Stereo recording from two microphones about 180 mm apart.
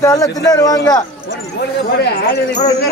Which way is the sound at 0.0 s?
20° left (ahead or behind).